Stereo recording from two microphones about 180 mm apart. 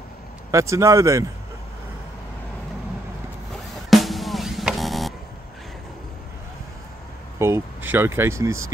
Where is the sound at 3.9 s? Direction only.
Centre (ahead or behind).